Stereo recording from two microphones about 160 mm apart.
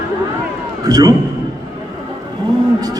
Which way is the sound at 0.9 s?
25° right (ahead or behind).